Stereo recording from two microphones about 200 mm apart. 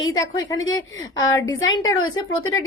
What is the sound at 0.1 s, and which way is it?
A woman's voice, 20° left (ahead or behind).